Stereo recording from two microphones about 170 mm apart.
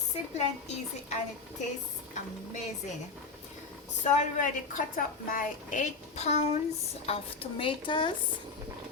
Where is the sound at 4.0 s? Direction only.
45° left (ahead or behind); by 8.1 s 30° left (ahead or behind).